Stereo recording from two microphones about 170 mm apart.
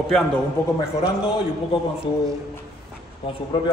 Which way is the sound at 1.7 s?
35° left (ahead or behind).